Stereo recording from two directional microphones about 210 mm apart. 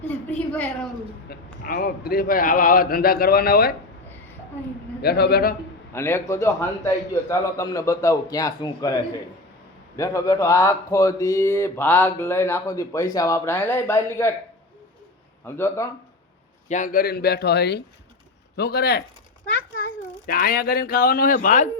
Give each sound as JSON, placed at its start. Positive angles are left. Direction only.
{"t": 0.0, "sound": "a woman's voice", "side_deg": 5}
{"t": 1.3, "sound": "a man's voice", "side_deg": 45}
{"t": 5.0, "sound": "a man's voice", "side_deg": 50}
{"t": 5.9, "sound": "speech", "side_deg": 10}
{"t": 10.0, "sound": "speech", "side_deg": 15}
{"t": 15.4, "sound": "speech", "side_deg": 10}
{"t": 16.6, "sound": "a man's voice", "side_deg": 35}
{"t": 20.2, "sound": "a man's voice", "side_deg": 45}